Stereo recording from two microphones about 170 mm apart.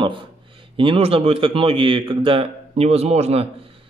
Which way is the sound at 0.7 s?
30° right (ahead or behind).